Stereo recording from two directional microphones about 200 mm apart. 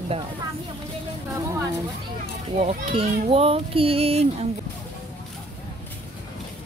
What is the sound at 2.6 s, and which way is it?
A child's voice, 30° right (ahead or behind).